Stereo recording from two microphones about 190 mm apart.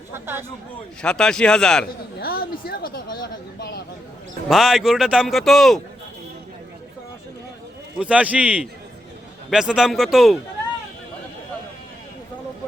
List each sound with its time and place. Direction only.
0.1 s a man's voice: 10° right (ahead or behind)
1.0 s speech: 5° left (ahead or behind)
2.2 s a sound: 55° left (ahead or behind)
4.4 s speech: centre (ahead or behind)
7.9 s a man's voice: 5° right (ahead or behind)